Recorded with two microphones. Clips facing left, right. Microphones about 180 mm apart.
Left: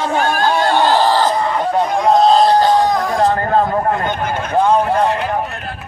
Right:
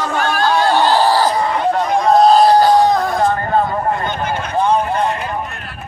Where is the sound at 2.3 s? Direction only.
5° right (ahead or behind).